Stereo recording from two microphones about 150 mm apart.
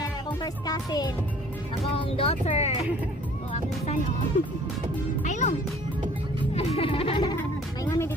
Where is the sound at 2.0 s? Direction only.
40° left (ahead or behind).